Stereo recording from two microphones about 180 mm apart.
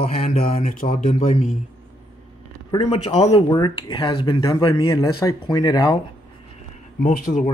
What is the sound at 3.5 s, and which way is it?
Speech, 25° left (ahead or behind).